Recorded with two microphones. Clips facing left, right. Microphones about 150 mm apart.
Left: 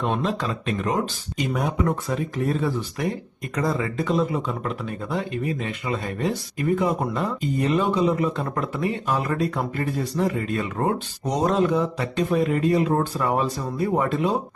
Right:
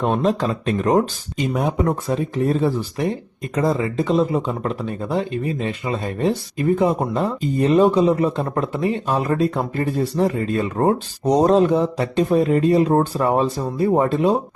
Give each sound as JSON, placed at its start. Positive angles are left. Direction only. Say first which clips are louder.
{"t": 0.0, "sound": "speech", "louder": "right 6 dB", "side_deg": -45}
{"t": 1.4, "sound": "speech", "louder": "right 4 dB", "side_deg": -25}